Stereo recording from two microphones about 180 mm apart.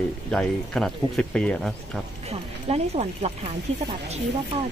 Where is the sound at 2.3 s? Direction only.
35° right (ahead or behind).